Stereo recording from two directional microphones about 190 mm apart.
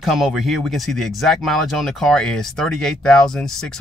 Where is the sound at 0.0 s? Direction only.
Centre (ahead or behind).